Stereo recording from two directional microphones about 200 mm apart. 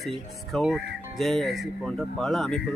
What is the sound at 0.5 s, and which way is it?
Speech, centre (ahead or behind).